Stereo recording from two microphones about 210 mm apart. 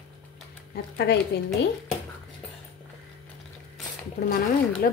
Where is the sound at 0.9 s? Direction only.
50° left (ahead or behind).